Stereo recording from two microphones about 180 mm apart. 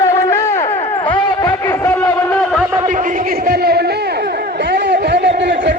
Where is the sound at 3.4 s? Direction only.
65° right (ahead or behind).